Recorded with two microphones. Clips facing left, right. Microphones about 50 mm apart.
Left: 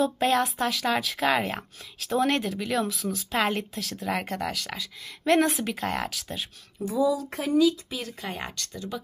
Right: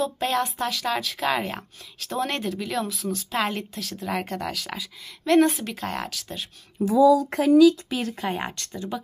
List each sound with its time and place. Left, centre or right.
0.0 s a woman's voice: centre
6.8 s speech: right
7.2 s speech: right
7.9 s speech: right
8.3 s speech: right